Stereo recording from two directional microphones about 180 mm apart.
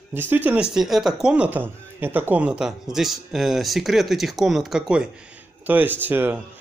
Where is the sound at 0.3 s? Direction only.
10° right (ahead or behind).